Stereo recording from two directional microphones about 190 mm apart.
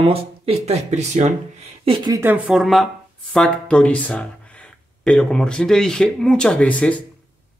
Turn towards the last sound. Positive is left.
turn(degrees=5)  # may be behind; listen again after turning